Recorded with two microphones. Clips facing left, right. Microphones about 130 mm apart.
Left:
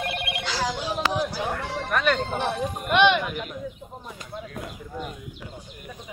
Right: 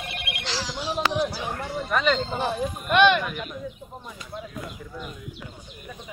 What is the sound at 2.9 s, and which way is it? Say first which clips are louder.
Speech: right 1 dB; 15° left (ahead or behind).